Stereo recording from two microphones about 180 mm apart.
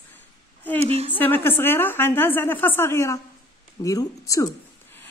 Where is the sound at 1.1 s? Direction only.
10° left (ahead or behind).